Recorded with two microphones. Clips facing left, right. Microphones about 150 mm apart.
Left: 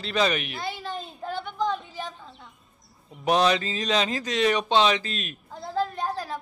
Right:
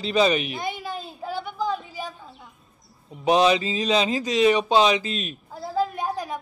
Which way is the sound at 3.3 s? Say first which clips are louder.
Right 3 dB; 5° right (ahead or behind).